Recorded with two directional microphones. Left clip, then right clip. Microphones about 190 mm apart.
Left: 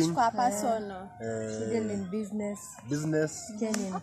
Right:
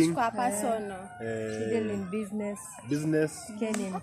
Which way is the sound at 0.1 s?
10° left (ahead or behind).